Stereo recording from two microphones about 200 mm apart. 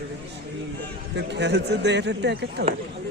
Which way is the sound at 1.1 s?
60° right (ahead or behind).